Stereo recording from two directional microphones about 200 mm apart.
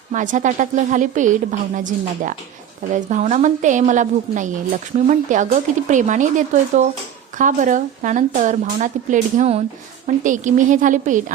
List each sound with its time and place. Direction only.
0.1 s a woman's voice: 40° right (ahead or behind)